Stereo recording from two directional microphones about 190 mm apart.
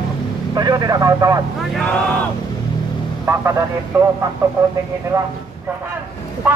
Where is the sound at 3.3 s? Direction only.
15° right (ahead or behind).